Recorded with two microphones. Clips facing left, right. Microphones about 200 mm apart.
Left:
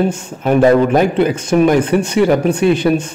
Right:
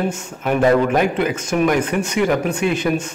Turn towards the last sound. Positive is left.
turn(degrees=35)  # may be behind; listen again after turning